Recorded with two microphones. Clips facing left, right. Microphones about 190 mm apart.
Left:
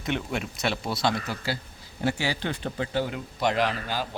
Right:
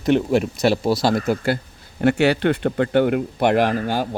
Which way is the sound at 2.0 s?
65° right (ahead or behind).